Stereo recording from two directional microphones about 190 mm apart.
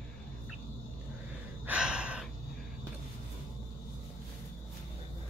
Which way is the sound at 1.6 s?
5° right (ahead or behind).